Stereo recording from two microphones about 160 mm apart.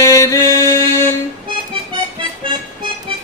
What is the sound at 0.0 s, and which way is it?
Music, 20° left (ahead or behind).